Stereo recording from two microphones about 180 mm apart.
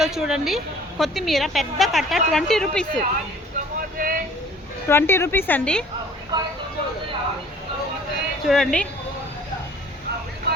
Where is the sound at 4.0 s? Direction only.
50° right (ahead or behind).